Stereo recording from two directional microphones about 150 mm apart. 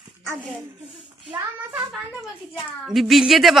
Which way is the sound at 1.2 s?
10° right (ahead or behind).